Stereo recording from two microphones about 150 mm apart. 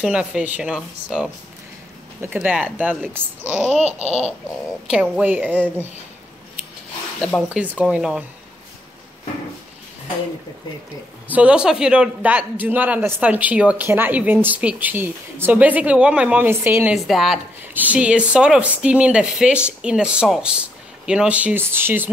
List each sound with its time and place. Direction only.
0.0 s a man's voice: 5° right (ahead or behind)
4.8 s a man's voice: 5° right (ahead or behind)
7.2 s speech: 5° left (ahead or behind)
7.4 s a man's voice: 10° right (ahead or behind)
11.2 s a man's voice: 10° right (ahead or behind)
16.9 s a man's voice: centre (ahead or behind)